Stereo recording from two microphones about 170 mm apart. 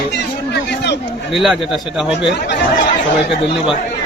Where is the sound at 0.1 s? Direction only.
85° left.